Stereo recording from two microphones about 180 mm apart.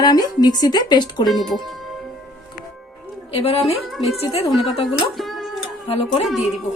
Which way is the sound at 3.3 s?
35° left (ahead or behind).